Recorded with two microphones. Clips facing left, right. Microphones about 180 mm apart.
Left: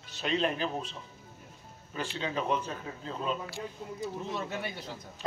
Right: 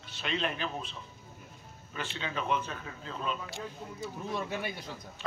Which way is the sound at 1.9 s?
35° left (ahead or behind).